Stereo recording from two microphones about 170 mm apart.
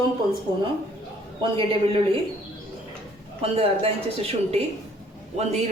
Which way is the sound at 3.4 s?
35° right (ahead or behind).